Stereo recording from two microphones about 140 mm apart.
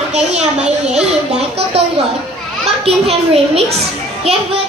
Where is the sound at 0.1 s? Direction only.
50° right (ahead or behind).